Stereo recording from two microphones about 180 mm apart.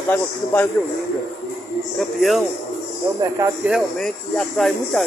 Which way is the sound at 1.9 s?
Centre (ahead or behind).